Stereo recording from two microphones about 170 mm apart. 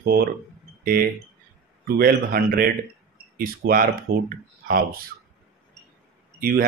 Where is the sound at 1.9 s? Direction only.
60° right (ahead or behind).